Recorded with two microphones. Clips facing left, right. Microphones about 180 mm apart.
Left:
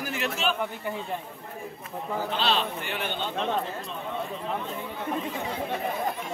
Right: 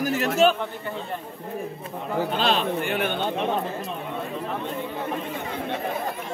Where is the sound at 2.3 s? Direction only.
50° right (ahead or behind).